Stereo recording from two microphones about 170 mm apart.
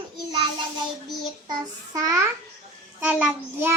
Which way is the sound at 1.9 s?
20° right (ahead or behind).